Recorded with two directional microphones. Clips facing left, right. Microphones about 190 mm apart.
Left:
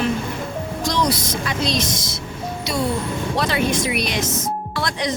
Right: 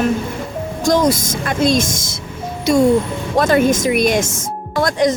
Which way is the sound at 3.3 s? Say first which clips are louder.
Right 8 dB; 45° right (ahead or behind).